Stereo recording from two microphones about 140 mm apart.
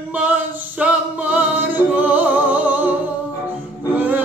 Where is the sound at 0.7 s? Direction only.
10° right (ahead or behind).